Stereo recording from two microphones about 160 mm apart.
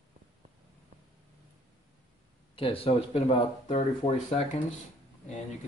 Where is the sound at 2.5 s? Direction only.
35° left (ahead or behind).